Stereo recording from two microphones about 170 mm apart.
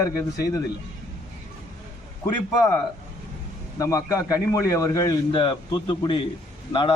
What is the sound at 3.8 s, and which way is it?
A man's voice, 20° left (ahead or behind).